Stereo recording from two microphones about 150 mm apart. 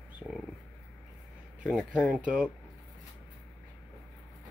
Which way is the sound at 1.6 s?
Centre (ahead or behind).